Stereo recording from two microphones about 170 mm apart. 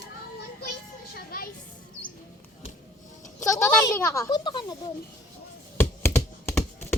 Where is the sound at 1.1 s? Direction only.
60° left (ahead or behind).